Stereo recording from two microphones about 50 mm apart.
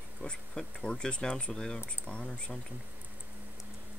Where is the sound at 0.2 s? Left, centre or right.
Centre.